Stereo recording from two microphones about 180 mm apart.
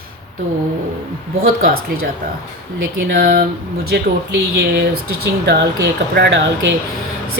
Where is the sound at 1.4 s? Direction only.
50° right (ahead or behind).